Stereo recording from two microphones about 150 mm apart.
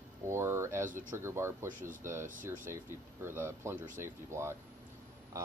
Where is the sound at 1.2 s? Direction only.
20° right (ahead or behind).